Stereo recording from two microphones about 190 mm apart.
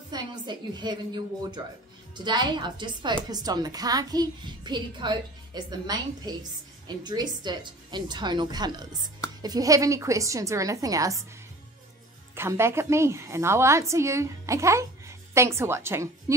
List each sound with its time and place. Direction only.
0.1 s a child's voice: 20° right (ahead or behind)
12.4 s a woman's voice: 15° right (ahead or behind)